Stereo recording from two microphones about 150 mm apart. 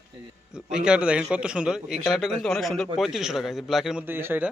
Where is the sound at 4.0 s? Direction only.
15° right (ahead or behind).